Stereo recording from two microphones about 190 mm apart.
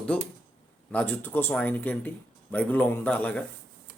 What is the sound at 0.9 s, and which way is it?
Speech, 5° left (ahead or behind).